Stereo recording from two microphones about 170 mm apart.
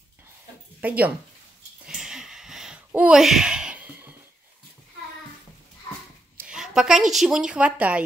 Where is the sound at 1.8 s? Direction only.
5° right (ahead or behind).